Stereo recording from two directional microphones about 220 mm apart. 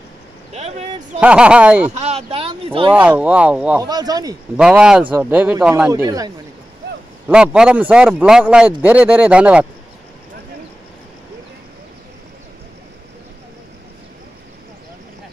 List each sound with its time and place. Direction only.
0.5 s speech: 30° right (ahead or behind)
1.2 s speech: 5° right (ahead or behind)
2.0 s speech: 30° right (ahead or behind)
2.9 s speech: 5° right (ahead or behind)
3.8 s speech: 20° right (ahead or behind)
4.6 s speech: 5° right (ahead or behind)
5.9 s speech: 15° right (ahead or behind)